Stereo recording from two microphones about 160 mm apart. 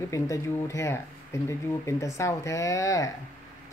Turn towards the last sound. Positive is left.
turn(degrees=20)  # may be behind; listen again after turning